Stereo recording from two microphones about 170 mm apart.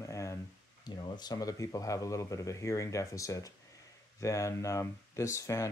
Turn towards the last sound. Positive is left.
turn(degrees=20)  # may be behind; listen again after turning